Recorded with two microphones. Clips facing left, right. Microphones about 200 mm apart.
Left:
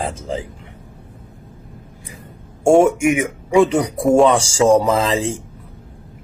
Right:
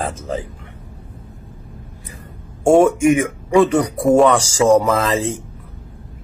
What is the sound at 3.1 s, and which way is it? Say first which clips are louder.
Speech: right 2 dB; 10° left (ahead or behind).